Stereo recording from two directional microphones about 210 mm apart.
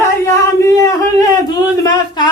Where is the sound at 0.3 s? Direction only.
15° left (ahead or behind).